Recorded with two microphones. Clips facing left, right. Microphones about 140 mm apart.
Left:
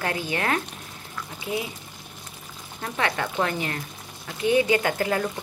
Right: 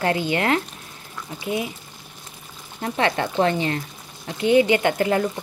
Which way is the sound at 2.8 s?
30° right (ahead or behind).